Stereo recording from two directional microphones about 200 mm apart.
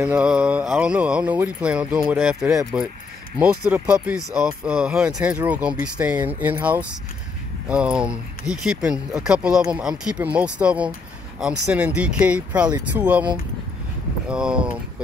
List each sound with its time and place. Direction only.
0.0 s speech: 5° right (ahead or behind)
14.3 s speech: 5° right (ahead or behind)